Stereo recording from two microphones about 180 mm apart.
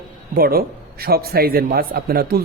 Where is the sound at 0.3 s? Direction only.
55° right (ahead or behind).